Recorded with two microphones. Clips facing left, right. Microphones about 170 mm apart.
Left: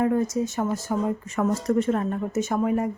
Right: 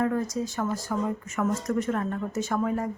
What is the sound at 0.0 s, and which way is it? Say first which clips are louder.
Speech: left 4 dB; 20° left (ahead or behind).